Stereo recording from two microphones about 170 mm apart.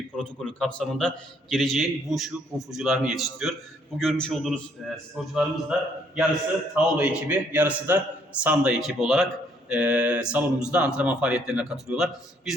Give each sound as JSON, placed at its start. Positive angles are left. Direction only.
{"t": 0.2, "sound": "a man's voice", "side_deg": 5}
{"t": 6.7, "sound": "a man's voice", "side_deg": -10}